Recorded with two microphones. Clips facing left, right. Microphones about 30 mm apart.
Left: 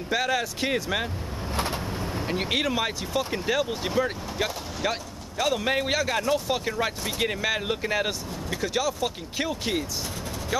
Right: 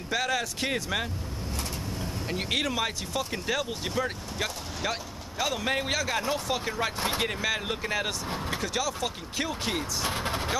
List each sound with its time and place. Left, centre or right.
0.1 s speech: centre
1.5 s vehicle: left
2.2 s speech: centre
10.0 s vehicle: right